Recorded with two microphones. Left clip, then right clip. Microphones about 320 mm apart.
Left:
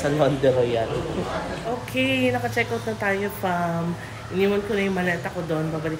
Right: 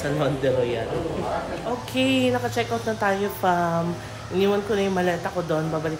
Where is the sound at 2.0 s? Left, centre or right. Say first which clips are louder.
Even; centre.